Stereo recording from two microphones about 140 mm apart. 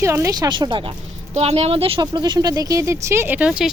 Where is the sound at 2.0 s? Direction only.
30° right (ahead or behind); by 3.7 s 5° right (ahead or behind).